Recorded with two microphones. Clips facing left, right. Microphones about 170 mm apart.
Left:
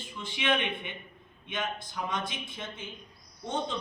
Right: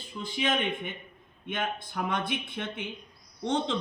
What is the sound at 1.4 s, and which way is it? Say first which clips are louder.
A man's voice: right 2 dB; 55° right (ahead or behind).